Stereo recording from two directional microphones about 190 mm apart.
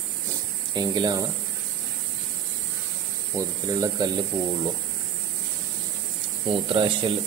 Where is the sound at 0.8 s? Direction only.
20° right (ahead or behind).